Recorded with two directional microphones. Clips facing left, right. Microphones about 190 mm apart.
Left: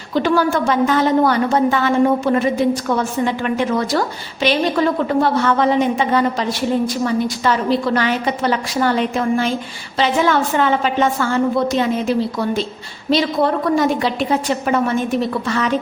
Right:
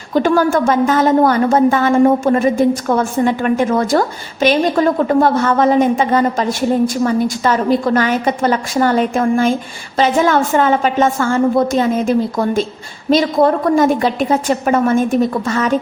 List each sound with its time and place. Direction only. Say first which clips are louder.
0.1 s a woman's voice: right 3 dB; 45° right (ahead or behind)